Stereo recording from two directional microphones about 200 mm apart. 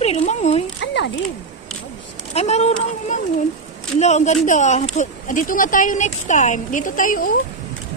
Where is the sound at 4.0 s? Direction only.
35° left (ahead or behind).